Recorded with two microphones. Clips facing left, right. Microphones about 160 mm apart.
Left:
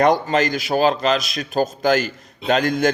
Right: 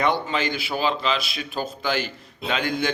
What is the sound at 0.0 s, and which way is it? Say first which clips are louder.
A man's voice: left 7 dB; 40° left (ahead or behind).